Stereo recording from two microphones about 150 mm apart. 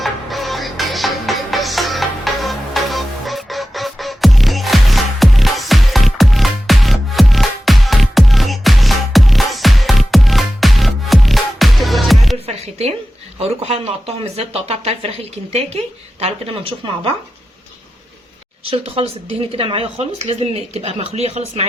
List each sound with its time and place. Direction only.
0.0 s music: centre (ahead or behind)
13.6 s speech: 40° right (ahead or behind)
16.2 s speech: 40° right (ahead or behind)
18.6 s speech: 40° right (ahead or behind)